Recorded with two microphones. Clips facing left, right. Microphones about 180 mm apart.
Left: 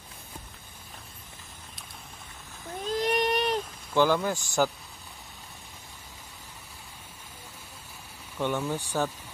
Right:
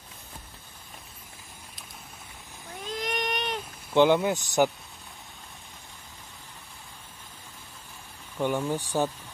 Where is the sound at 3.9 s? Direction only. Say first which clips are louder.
Right 3 dB; 25° right (ahead or behind).